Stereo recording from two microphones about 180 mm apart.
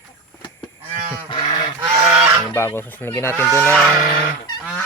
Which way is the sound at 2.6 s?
15° left (ahead or behind).